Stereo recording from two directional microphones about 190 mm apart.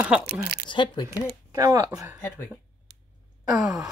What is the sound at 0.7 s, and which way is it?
Speech, 25° left (ahead or behind).